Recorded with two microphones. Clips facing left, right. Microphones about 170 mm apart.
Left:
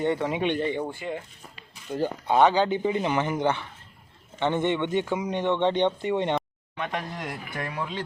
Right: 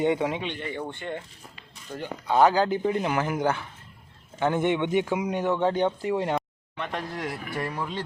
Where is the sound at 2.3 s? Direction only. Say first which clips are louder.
Even; 5° right (ahead or behind).